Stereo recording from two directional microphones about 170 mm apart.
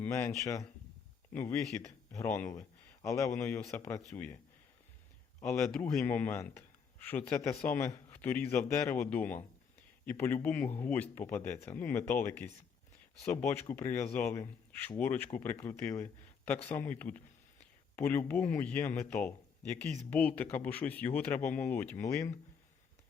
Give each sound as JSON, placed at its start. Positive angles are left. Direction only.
{"t": 0.0, "sound": "a man's voice", "side_deg": 15}
{"t": 5.4, "sound": "speech", "side_deg": 15}